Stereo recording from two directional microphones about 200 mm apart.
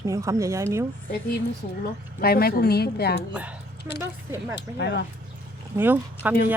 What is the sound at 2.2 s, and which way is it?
Speech, 50° left (ahead or behind).